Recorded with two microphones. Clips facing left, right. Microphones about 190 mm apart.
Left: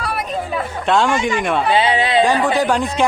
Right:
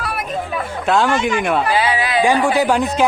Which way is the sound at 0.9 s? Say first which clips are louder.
Even; centre (ahead or behind).